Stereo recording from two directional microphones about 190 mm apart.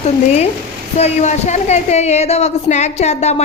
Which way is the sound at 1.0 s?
35° left (ahead or behind).